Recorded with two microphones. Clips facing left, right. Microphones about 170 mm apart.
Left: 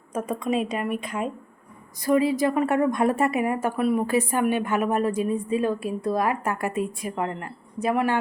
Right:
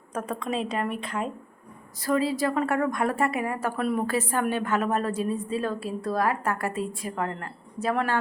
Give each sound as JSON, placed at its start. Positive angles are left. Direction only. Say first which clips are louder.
{"t": 0.1, "sound": "a woman's voice", "louder": "left 4 dB", "side_deg": 10}
{"t": 3.8, "sound": "a woman's voice", "louder": "left 4 dB", "side_deg": 5}